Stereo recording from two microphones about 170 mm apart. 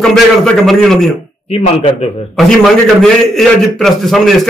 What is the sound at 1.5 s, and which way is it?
Speech, 35° left (ahead or behind).